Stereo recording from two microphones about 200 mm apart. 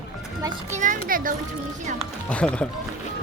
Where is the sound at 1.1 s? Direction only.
45° right (ahead or behind).